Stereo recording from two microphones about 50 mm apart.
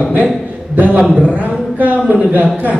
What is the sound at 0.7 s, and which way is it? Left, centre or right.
A man's voice, right.